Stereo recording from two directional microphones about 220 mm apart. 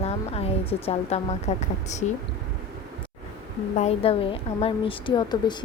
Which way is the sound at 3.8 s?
25° left (ahead or behind).